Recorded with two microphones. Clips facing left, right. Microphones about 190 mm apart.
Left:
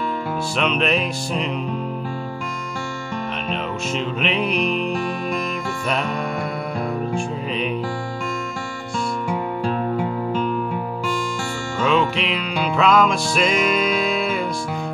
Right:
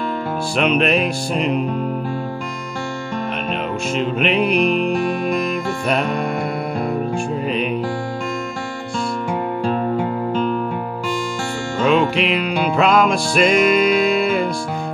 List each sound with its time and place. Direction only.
0.7 s music: 5° right (ahead or behind)
3.9 s music: 5° right (ahead or behind)
7.2 s music: 5° right (ahead or behind)
11.8 s music: centre (ahead or behind)
12.6 s music: 50° right (ahead or behind)
13.3 s music: centre (ahead or behind)